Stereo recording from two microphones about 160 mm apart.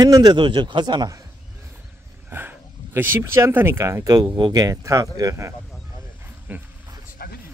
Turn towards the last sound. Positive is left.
turn(degrees=75)  # may be behind; listen again after turning